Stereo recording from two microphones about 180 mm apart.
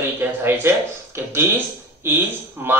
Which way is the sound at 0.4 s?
10° right (ahead or behind).